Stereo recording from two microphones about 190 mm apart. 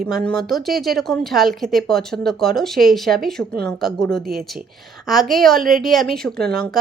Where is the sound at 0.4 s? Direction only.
Centre (ahead or behind).